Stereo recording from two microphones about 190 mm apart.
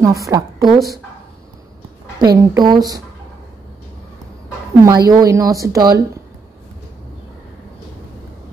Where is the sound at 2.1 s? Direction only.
20° right (ahead or behind).